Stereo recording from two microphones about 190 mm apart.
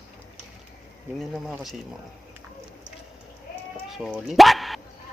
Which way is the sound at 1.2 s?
Centre (ahead or behind).